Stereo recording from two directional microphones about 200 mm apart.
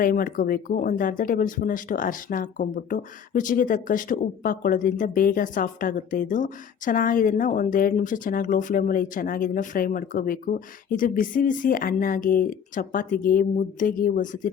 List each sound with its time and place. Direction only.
0.0 s speech: 45° left (ahead or behind)